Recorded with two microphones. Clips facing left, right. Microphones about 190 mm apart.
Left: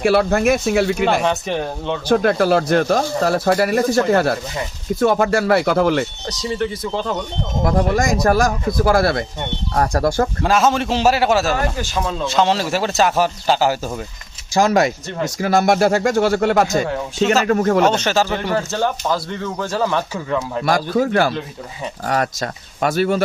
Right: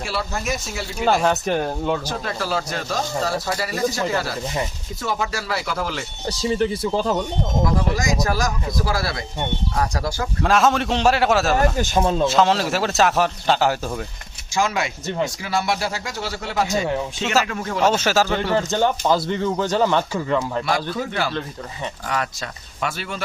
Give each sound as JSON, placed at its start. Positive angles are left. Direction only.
{"t": 0.0, "sound": "speech", "side_deg": 60}
{"t": 1.2, "sound": "a man's voice", "side_deg": 0}
{"t": 2.0, "sound": "speech", "side_deg": 60}
{"t": 6.9, "sound": "speech", "side_deg": -5}
{"t": 7.6, "sound": "speech", "side_deg": 55}
{"t": 10.4, "sound": "a man's voice", "side_deg": 0}
{"t": 14.5, "sound": "speech", "side_deg": 40}
{"t": 17.8, "sound": "a man's voice", "side_deg": -5}
{"t": 20.7, "sound": "speech", "side_deg": 45}